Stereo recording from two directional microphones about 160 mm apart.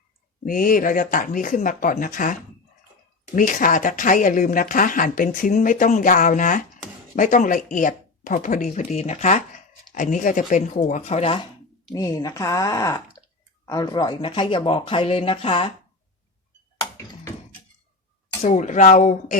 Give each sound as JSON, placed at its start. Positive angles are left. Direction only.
{"t": 0.4, "sound": "speech", "side_deg": 60}
{"t": 11.9, "sound": "speech", "side_deg": 20}
{"t": 18.4, "sound": "speech", "side_deg": 50}